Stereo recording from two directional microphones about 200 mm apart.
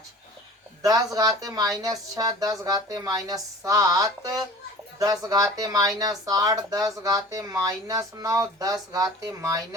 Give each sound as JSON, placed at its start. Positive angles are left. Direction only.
{"t": 0.8, "sound": "speech", "side_deg": -20}